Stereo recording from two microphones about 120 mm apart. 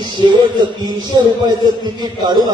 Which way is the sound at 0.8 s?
40° right (ahead or behind).